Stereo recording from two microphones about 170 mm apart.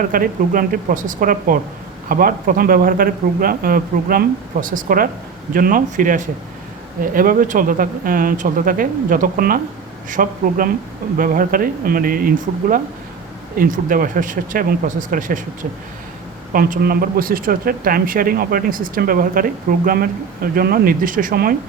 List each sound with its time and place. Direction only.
0.0 s speech: 55° right (ahead or behind)
16.5 s speech: 55° right (ahead or behind)